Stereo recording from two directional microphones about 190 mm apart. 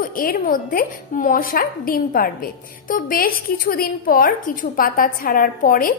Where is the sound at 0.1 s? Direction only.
50° left (ahead or behind).